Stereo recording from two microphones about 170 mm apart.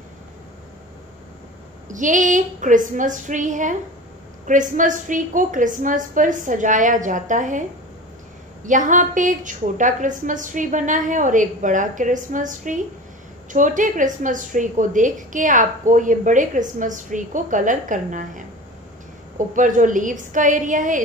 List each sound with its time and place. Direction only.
1.9 s a woman's voice: 50° right (ahead or behind)
8.6 s a woman's voice: 50° right (ahead or behind)